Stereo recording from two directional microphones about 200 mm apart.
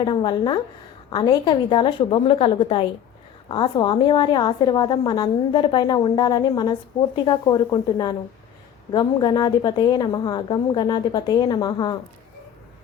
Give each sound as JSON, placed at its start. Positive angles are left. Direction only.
{"t": 0.0, "sound": "a woman's voice", "side_deg": 20}